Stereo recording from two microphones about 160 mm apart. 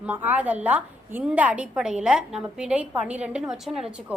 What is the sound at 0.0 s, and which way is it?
A woman's voice, 10° right (ahead or behind).